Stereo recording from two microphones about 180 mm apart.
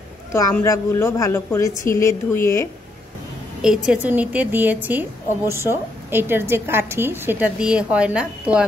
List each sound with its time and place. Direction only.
0.3 s a woman's voice: 15° left (ahead or behind)
3.6 s a woman's voice: 5° right (ahead or behind)